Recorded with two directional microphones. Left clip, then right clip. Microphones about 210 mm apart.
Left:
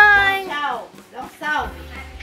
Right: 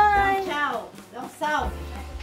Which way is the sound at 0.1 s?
5° right (ahead or behind).